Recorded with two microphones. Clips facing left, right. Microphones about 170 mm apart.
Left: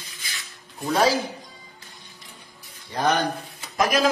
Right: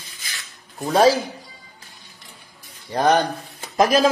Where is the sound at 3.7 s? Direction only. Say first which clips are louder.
Right 5 dB; 30° right (ahead or behind).